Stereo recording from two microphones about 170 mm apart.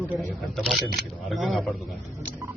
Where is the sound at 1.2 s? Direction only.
Centre (ahead or behind).